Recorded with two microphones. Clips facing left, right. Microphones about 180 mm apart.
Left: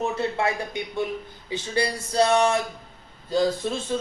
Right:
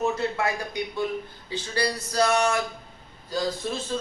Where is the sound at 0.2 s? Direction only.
25° left (ahead or behind).